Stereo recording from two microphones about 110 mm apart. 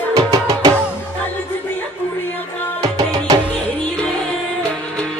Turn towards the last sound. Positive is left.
turn(degrees=-35)  # may be behind; listen again after turning